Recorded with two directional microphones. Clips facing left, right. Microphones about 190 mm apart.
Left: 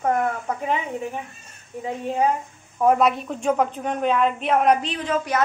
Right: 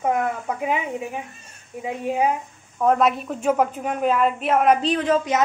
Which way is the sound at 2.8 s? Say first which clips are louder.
Left 1 dB; 5° left (ahead or behind).